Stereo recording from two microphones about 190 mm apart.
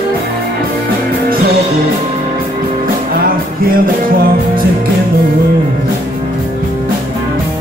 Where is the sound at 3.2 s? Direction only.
50° right (ahead or behind).